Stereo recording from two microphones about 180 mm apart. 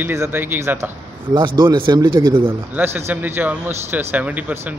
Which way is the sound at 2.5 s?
10° right (ahead or behind).